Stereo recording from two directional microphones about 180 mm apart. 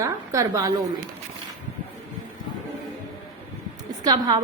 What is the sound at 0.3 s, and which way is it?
Speech, 20° right (ahead or behind).